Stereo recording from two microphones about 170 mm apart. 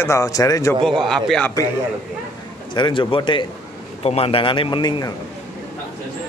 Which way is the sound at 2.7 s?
30° left (ahead or behind).